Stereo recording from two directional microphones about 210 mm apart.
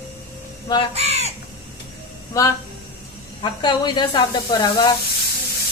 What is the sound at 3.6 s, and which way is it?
A woman's voice, 20° left (ahead or behind).